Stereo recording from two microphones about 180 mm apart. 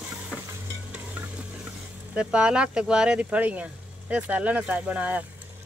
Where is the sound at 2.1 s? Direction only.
5° right (ahead or behind).